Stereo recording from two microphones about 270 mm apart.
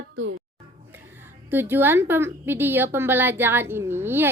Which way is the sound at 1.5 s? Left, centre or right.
Centre.